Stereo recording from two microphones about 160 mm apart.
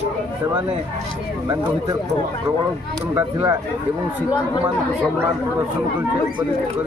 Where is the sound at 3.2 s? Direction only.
20° right (ahead or behind).